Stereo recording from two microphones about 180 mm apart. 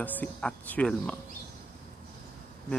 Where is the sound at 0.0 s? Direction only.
10° left (ahead or behind).